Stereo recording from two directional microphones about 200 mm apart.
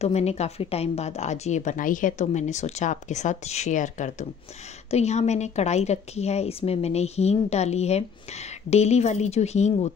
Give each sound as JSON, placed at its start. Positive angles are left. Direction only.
{"t": 0.0, "sound": "a woman's voice", "side_deg": 30}